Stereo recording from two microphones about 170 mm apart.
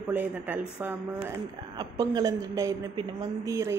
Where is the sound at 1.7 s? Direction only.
20° right (ahead or behind).